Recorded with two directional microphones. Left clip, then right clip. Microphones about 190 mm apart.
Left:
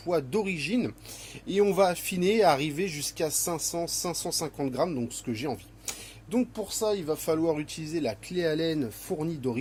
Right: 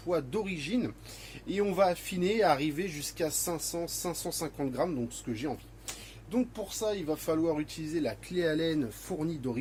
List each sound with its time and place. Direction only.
0.1 s speech: 50° left (ahead or behind); by 9.6 s 30° left (ahead or behind)